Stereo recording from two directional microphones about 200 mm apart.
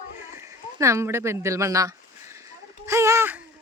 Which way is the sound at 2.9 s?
15° right (ahead or behind).